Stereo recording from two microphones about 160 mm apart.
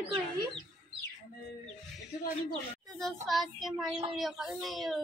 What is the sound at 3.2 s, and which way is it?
Speech, centre (ahead or behind).